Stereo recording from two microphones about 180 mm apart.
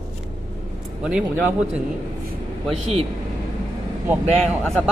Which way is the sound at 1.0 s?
5° right (ahead or behind).